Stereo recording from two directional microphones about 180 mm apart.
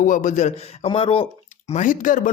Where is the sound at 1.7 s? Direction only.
45° left (ahead or behind).